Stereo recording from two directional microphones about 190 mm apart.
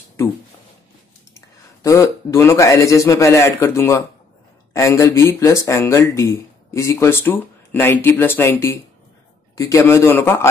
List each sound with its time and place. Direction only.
1.3 s speech: 15° left (ahead or behind)